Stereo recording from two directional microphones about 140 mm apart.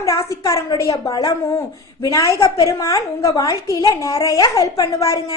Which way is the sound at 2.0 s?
25° left (ahead or behind).